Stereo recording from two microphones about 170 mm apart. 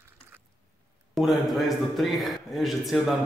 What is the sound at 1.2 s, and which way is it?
A man's voice, centre (ahead or behind).